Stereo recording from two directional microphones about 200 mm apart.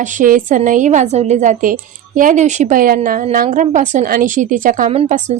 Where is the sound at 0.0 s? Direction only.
40° right (ahead or behind).